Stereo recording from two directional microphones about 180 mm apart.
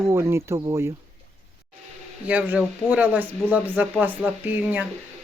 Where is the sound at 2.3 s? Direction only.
10° right (ahead or behind).